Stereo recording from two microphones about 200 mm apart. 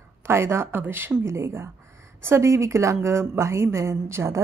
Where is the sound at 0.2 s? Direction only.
10° right (ahead or behind).